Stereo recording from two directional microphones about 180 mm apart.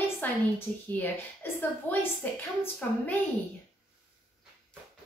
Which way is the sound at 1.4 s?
10° left (ahead or behind).